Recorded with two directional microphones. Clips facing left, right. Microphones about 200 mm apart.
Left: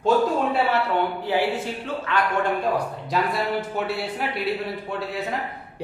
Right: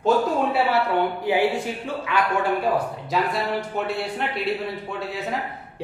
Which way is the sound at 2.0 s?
10° right (ahead or behind).